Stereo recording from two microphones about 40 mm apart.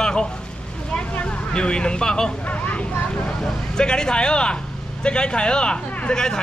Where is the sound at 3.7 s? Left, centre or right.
Centre.